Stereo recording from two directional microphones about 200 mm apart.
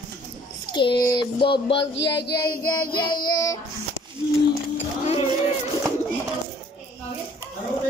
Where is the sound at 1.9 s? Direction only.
60° left (ahead or behind).